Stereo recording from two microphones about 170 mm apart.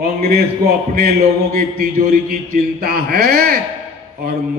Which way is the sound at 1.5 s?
55° right (ahead or behind).